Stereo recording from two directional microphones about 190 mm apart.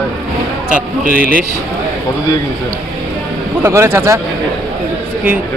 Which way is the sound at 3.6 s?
15° right (ahead or behind).